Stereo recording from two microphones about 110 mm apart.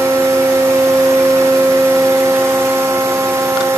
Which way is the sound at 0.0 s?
20° right (ahead or behind).